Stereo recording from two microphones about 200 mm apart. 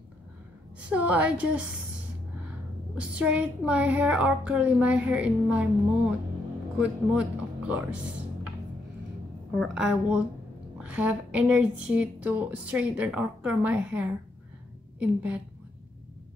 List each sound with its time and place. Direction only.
0.8 s a woman's voice: 5° right (ahead or behind)
3.0 s a woman's voice: 5° right (ahead or behind)
9.6 s a woman's voice: 5° right (ahead or behind)